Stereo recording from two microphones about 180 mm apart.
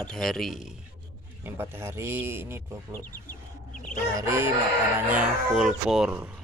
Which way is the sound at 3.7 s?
50° left (ahead or behind).